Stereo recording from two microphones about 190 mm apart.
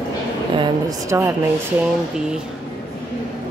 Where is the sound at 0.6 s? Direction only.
15° right (ahead or behind).